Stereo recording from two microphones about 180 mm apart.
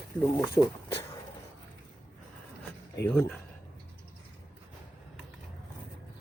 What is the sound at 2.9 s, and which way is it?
Speech, 10° left (ahead or behind).